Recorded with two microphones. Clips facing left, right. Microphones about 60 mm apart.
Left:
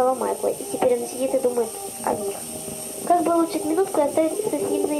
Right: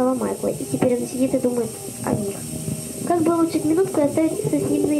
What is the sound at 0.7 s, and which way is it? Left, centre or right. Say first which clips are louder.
Speech: right 1 dB; right.